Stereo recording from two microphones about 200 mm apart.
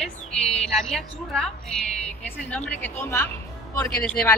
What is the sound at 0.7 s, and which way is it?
A woman's voice, centre (ahead or behind).